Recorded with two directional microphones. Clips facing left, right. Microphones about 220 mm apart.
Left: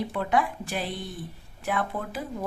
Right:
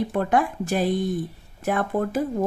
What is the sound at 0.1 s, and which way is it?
Speech, 50° right (ahead or behind).